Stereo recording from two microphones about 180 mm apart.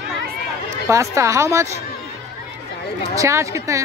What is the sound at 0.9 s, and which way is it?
Speech, 15° right (ahead or behind).